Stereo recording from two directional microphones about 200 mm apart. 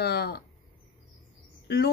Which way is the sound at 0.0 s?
55° left (ahead or behind).